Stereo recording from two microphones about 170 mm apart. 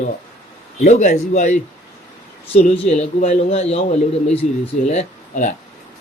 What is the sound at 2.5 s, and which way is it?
A man's voice, 35° left (ahead or behind).